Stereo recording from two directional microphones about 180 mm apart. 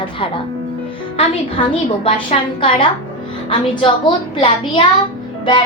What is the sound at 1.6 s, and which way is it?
Speech, 30° left (ahead or behind).